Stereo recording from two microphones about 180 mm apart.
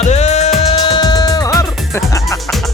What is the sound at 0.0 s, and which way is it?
Music, 40° left (ahead or behind).